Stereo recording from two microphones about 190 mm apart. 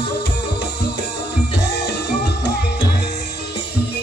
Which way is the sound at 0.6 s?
60° left (ahead or behind).